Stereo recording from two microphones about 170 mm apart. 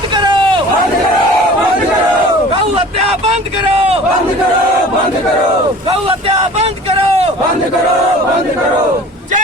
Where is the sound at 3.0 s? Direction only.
35° right (ahead or behind).